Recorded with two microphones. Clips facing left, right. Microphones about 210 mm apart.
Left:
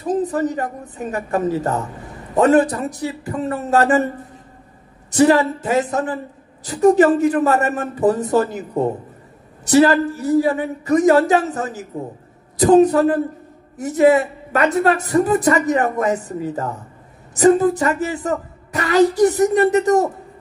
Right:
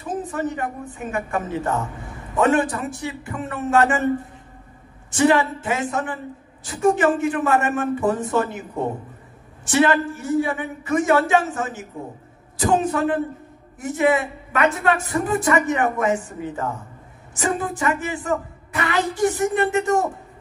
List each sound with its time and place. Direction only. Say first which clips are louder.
0.0 s a woman's voice: left 6 dB; 35° left (ahead or behind)
5.1 s a woman's voice: left 4 dB; 35° left (ahead or behind)